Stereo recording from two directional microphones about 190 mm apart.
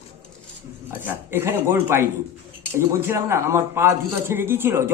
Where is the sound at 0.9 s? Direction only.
10° right (ahead or behind).